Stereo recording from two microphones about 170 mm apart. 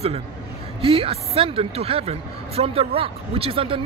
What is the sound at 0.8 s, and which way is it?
Speech, 35° right (ahead or behind).